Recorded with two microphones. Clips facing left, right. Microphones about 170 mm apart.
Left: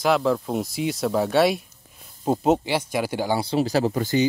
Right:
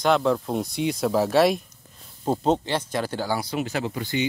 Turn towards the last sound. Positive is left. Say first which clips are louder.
# left 6 dB
turn(degrees=40)  # may be behind; listen again after turning